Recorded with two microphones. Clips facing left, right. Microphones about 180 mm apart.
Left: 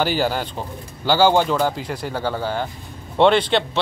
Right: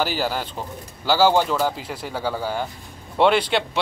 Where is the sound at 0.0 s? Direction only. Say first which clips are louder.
Left 3 dB; centre (ahead or behind).